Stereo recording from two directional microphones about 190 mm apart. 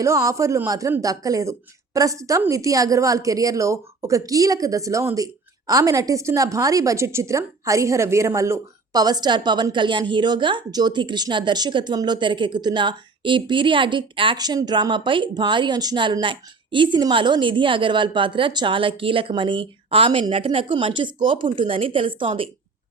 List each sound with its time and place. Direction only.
0.0 s a man's voice: 15° right (ahead or behind)